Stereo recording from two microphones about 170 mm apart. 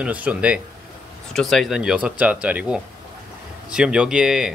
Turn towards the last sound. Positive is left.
turn(degrees=-5)  # may be behind; listen again after turning